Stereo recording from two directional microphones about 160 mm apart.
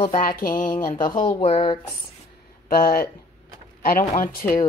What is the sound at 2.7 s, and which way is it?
Speech, 65° left (ahead or behind).